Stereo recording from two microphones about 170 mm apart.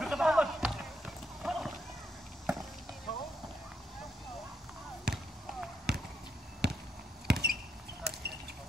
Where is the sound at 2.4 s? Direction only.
Centre (ahead or behind).